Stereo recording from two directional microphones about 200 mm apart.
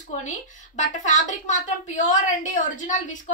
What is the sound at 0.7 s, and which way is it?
A woman's voice, 40° left (ahead or behind).